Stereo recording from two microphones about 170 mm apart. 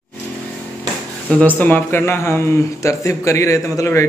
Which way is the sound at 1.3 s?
10° left (ahead or behind).